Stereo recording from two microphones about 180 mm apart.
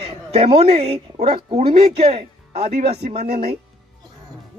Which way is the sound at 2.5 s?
60° right (ahead or behind).